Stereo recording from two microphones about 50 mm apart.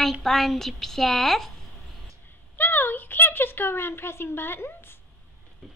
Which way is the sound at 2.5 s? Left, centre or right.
Left.